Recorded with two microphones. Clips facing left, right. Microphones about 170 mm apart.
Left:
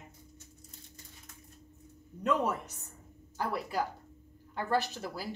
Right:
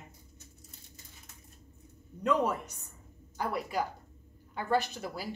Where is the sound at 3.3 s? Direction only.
15° right (ahead or behind).